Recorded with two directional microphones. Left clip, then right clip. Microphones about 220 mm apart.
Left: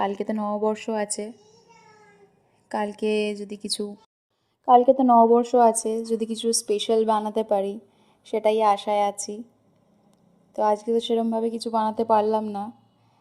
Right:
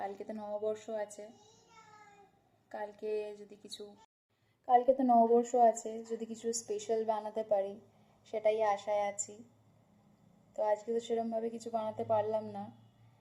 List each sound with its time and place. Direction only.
0.0 s a woman's voice: 40° left (ahead or behind)
2.6 s a woman's voice: 40° left (ahead or behind)
10.5 s a woman's voice: 35° left (ahead or behind)